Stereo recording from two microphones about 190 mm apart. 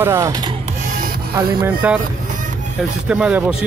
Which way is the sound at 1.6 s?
10° right (ahead or behind).